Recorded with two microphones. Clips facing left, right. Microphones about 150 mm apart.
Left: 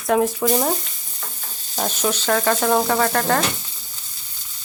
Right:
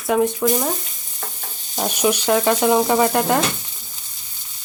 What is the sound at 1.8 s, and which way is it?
Frying, 15° right (ahead or behind).